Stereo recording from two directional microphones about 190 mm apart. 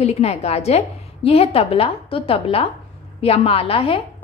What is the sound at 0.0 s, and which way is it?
A woman's voice, 35° left (ahead or behind).